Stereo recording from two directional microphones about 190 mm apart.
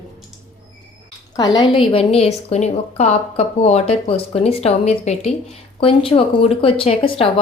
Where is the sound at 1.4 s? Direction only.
20° left (ahead or behind).